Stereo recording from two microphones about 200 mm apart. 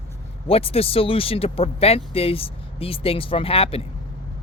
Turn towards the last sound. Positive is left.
turn(degrees=30)  # may be behind; listen again after turning